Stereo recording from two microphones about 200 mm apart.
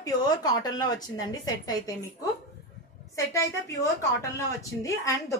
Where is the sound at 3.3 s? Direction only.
15° left (ahead or behind).